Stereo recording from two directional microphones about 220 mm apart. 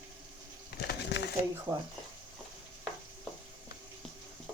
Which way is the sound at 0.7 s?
50° left (ahead or behind).